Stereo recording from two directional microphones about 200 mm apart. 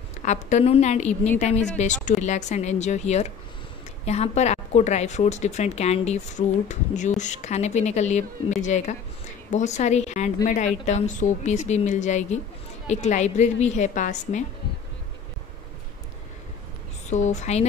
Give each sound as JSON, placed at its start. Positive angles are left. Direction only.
{"t": 0.2, "sound": "a woman's voice", "side_deg": 35}
{"t": 17.1, "sound": "a woman's voice", "side_deg": 35}